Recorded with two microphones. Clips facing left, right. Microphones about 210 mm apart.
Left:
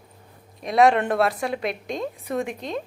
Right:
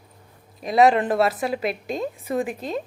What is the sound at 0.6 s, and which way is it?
A woman's voice, centre (ahead or behind).